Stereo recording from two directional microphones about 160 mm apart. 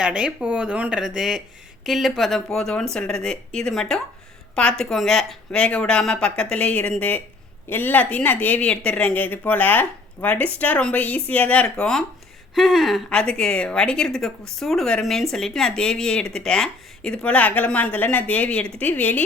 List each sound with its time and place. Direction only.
0.0 s speech: 5° right (ahead or behind); by 19.2 s 10° left (ahead or behind)